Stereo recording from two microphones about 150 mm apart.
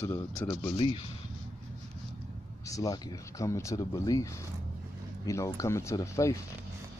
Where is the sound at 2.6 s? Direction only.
25° left (ahead or behind).